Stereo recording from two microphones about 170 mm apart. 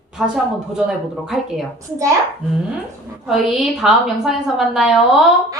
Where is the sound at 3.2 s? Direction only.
Centre (ahead or behind).